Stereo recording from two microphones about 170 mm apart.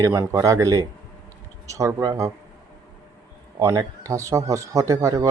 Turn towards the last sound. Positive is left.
turn(degrees=-20)  # may be behind; listen again after turning